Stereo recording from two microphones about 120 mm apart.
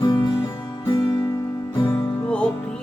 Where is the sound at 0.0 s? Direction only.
40° left (ahead or behind).